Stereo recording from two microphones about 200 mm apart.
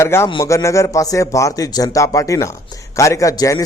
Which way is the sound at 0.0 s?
15° left (ahead or behind).